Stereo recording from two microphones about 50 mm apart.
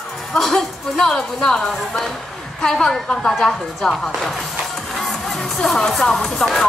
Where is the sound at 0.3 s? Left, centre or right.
Centre.